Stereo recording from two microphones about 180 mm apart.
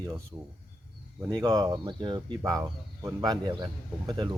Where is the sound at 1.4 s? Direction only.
20° right (ahead or behind).